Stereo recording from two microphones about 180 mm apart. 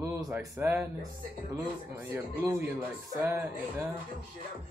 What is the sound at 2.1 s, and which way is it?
Speech, 10° right (ahead or behind).